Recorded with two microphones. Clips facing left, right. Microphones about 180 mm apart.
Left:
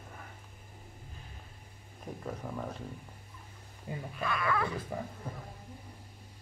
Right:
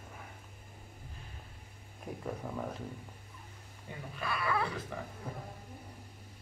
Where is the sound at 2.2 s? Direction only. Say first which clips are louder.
Even; 5° right (ahead or behind).